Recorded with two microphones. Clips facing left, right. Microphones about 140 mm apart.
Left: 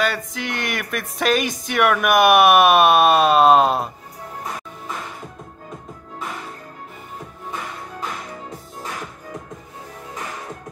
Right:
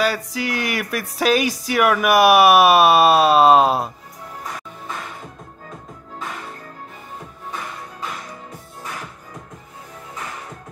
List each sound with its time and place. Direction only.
0.0 s speech: centre (ahead or behind)